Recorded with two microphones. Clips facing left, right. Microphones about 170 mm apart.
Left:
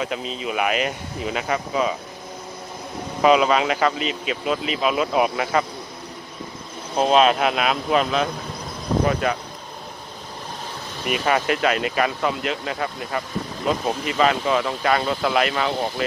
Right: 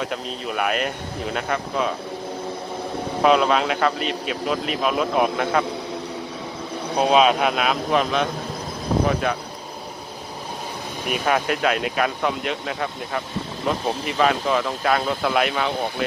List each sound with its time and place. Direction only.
0.0 s speech: centre (ahead or behind)
3.2 s speech: centre (ahead or behind)
7.0 s speech: centre (ahead or behind)
11.1 s speech: centre (ahead or behind)